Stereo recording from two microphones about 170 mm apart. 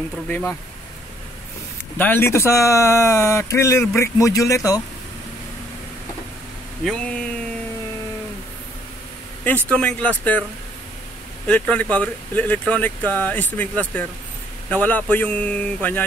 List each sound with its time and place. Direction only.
0.3 s speech: 10° left (ahead or behind)
2.0 s speech: 10° left (ahead or behind)
6.8 s speech: 5° left (ahead or behind)
9.4 s speech: 10° left (ahead or behind)
11.4 s speech: 5° left (ahead or behind)